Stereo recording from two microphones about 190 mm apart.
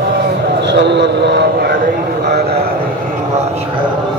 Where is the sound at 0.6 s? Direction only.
65° right (ahead or behind).